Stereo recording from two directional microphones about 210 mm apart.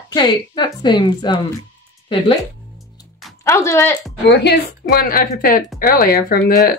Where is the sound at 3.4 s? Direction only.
15° left (ahead or behind).